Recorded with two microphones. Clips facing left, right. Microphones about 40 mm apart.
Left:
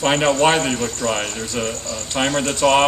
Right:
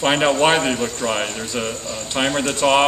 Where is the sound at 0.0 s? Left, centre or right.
Centre.